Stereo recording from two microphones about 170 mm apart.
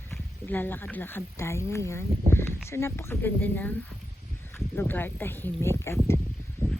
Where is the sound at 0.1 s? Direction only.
10° left (ahead or behind).